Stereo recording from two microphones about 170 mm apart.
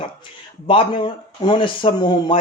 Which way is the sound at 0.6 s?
30° left (ahead or behind).